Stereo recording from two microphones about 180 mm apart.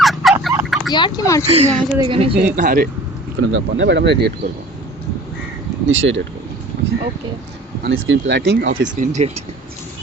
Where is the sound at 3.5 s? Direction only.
85° right.